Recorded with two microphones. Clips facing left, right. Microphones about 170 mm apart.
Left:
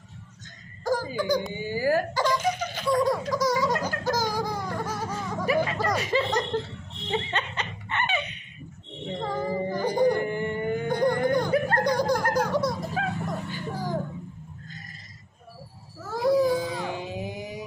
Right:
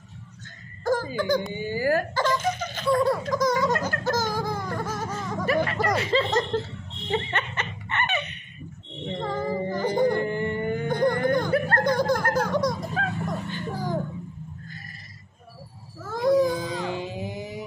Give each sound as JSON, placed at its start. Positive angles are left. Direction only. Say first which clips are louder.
{"t": 0.8, "sound": "a woman's voice", "louder": "right 1 dB", "side_deg": 15}
{"t": 1.5, "sound": "laughter", "louder": "right 1 dB", "side_deg": 15}
{"t": 5.9, "sound": "speech", "louder": "right 2 dB", "side_deg": 15}
{"t": 7.1, "sound": "laughter", "louder": "right 1 dB", "side_deg": 15}
{"t": 9.2, "sound": "a sound", "louder": "even", "side_deg": 10}
{"t": 13.5, "sound": "music", "louder": "right 2 dB", "side_deg": 0}
{"t": 16.0, "sound": "a sound", "louder": "right 1 dB", "side_deg": 5}